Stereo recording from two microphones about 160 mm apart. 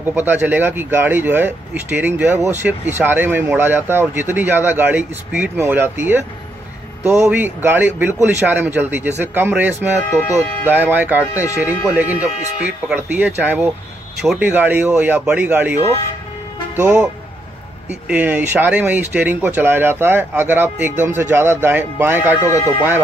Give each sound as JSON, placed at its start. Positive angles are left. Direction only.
{"t": 0.0, "sound": "speech", "side_deg": -10}
{"t": 10.2, "sound": "speech", "side_deg": 20}
{"t": 10.7, "sound": "speech", "side_deg": -10}
{"t": 22.4, "sound": "speech", "side_deg": 20}